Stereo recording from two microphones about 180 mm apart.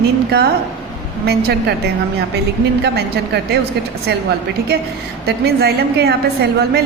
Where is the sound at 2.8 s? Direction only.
65° right (ahead or behind).